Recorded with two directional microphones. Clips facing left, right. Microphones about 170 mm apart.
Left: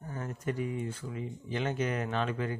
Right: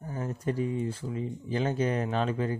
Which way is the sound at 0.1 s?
30° right (ahead or behind).